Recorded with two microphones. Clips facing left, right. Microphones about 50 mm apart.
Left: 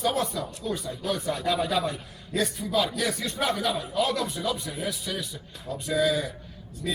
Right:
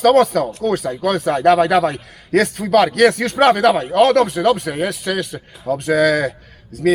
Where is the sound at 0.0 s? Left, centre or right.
Right.